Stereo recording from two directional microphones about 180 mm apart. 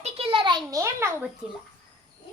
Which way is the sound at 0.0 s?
30° right (ahead or behind).